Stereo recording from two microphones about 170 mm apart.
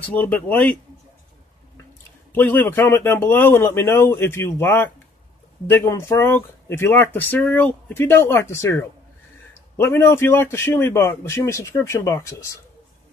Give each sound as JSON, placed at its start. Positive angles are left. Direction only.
{"t": 0.0, "sound": "speech", "side_deg": 10}
{"t": 2.3, "sound": "speech", "side_deg": 10}